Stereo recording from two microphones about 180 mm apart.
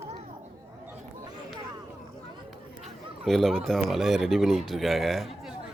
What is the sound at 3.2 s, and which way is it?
A man's voice, centre (ahead or behind).